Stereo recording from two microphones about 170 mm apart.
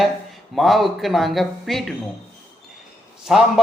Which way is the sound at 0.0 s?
Centre (ahead or behind).